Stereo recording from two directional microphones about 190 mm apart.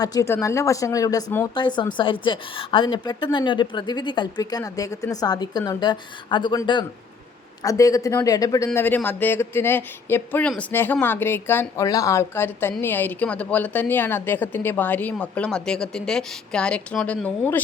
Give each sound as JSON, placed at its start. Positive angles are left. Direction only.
{"t": 0.0, "sound": "a woman's voice", "side_deg": 20}